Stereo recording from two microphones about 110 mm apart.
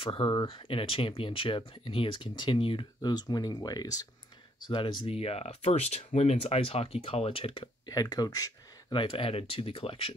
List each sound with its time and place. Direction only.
0.0 s speech: 55° left (ahead or behind); by 4.1 s 35° left (ahead or behind)
4.6 s speech: 45° left (ahead or behind)
7.9 s speech: 35° left (ahead or behind)
8.9 s speech: 50° left (ahead or behind)